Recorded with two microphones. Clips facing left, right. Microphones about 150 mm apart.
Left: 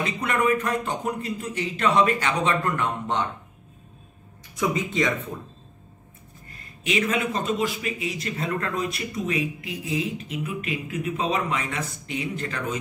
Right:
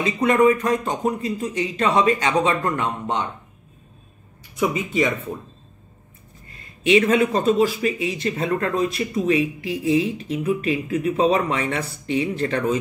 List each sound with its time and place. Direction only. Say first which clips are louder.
0.0 s speech: right 7 dB; 15° right (ahead or behind)
4.6 s speech: right 3 dB; 10° right (ahead or behind)
7.0 s speech: right 4 dB; 35° right (ahead or behind)